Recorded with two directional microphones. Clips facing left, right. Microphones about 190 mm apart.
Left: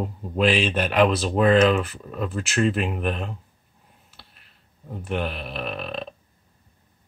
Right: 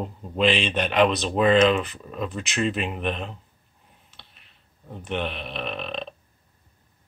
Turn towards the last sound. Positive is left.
turn(degrees=5)  # may be behind; listen again after turning